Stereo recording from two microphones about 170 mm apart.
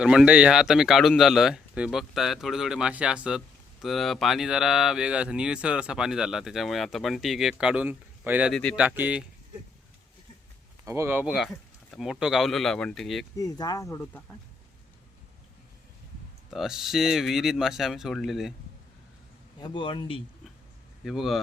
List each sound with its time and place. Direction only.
0.0 s speech: 5° right (ahead or behind)
8.5 s speech: 5° left (ahead or behind)
8.8 s speech: 10° right (ahead or behind)
10.8 s speech: 15° right (ahead or behind); by 13.2 s centre (ahead or behind)
13.3 s speech: 20° left (ahead or behind)
16.5 s speech: centre (ahead or behind)
19.5 s speech: 25° left (ahead or behind)
21.0 s speech: centre (ahead or behind)